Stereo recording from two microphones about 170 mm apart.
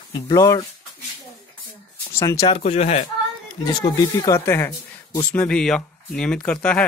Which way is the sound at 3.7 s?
20° left (ahead or behind).